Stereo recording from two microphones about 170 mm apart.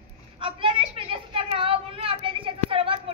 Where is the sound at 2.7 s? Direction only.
30° right (ahead or behind).